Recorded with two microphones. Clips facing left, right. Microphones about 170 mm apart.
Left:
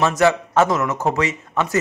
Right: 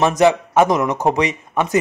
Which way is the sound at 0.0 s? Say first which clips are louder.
Right 3 dB; 20° right (ahead or behind).